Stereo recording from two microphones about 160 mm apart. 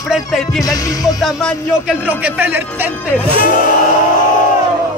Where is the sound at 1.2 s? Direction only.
5° right (ahead or behind).